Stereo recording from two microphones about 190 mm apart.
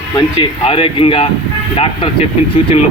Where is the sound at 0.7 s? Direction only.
30° left (ahead or behind).